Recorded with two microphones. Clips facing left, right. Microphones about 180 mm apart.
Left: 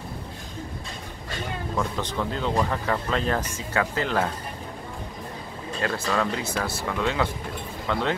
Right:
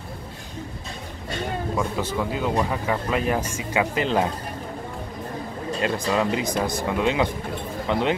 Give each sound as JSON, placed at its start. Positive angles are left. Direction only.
{"t": 1.8, "sound": "speech", "side_deg": -10}
{"t": 5.8, "sound": "speech", "side_deg": -20}